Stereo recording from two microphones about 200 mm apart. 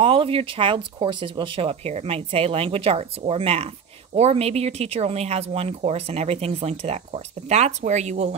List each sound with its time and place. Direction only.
0.0 s speech: 30° right (ahead or behind)